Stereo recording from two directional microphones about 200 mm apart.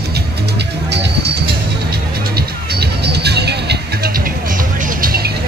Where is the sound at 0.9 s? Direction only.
55° right (ahead or behind).